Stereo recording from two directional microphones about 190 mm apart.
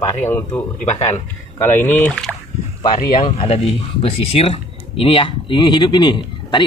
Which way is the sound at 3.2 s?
30° left (ahead or behind).